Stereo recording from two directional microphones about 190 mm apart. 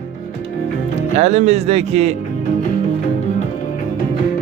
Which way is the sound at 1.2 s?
35° right (ahead or behind).